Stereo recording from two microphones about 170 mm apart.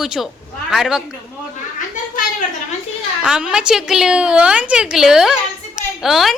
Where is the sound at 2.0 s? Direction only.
50° left (ahead or behind).